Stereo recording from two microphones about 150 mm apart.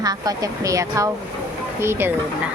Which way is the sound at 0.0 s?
25° right (ahead or behind).